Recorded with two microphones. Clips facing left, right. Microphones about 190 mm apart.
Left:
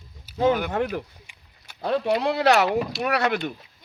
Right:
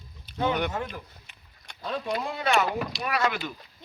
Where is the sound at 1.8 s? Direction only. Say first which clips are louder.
Left 8 dB; 70° left (ahead or behind).